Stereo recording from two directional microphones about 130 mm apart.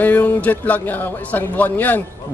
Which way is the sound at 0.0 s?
15° left (ahead or behind).